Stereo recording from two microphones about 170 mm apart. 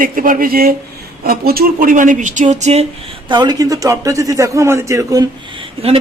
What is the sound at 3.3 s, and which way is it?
A man's voice, 25° right (ahead or behind).